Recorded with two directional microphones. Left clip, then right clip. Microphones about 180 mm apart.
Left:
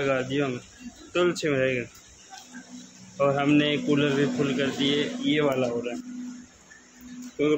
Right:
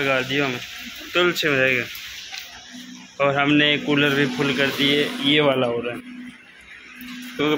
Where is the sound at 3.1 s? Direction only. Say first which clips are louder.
Right 4 dB; centre (ahead or behind); by 5.1 s 15° right (ahead or behind).